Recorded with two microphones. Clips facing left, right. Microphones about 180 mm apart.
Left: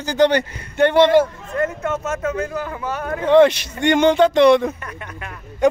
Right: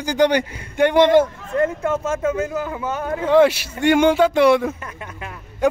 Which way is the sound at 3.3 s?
5° right (ahead or behind).